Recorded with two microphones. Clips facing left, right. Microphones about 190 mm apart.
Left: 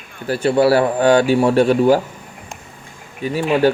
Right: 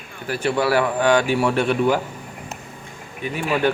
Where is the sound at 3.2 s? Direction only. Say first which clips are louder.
Left 6 dB; 35° left (ahead or behind).